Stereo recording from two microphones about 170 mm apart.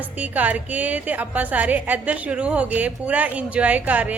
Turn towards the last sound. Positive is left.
turn(degrees=-10)  # may be behind; listen again after turning